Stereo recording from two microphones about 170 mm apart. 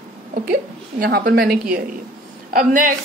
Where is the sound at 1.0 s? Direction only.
65° right (ahead or behind).